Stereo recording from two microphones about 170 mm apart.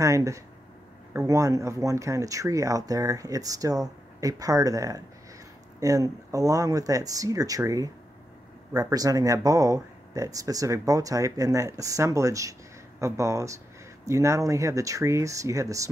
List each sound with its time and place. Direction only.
0.0 s speech: 20° right (ahead or behind)